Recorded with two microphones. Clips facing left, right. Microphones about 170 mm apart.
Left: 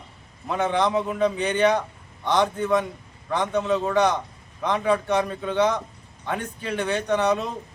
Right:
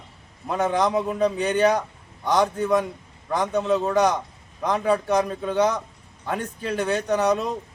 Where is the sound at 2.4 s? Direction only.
5° right (ahead or behind).